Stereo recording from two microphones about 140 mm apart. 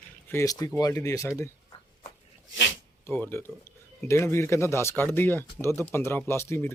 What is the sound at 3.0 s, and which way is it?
Speech, 15° left (ahead or behind).